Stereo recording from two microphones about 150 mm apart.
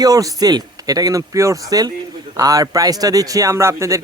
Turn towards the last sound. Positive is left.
turn(degrees=-20)  # may be behind; listen again after turning